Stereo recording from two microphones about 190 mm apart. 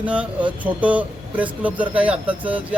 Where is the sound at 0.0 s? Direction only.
5° right (ahead or behind).